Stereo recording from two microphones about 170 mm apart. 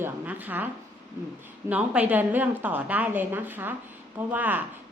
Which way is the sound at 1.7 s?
10° right (ahead or behind).